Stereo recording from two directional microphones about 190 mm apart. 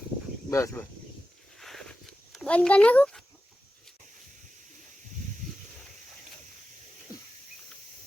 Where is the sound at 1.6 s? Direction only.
Centre (ahead or behind).